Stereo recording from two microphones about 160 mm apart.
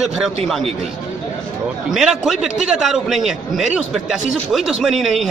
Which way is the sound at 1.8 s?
Centre (ahead or behind).